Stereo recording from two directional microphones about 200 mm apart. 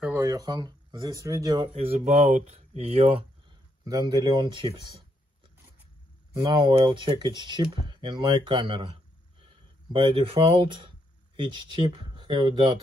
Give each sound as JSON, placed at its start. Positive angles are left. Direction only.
{"t": 0.0, "sound": "speech", "side_deg": -10}
{"t": 1.7, "sound": "speech", "side_deg": -30}
{"t": 6.3, "sound": "speech", "side_deg": -20}